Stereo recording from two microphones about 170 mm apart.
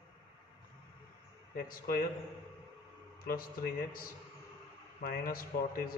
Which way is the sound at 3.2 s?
60° left (ahead or behind).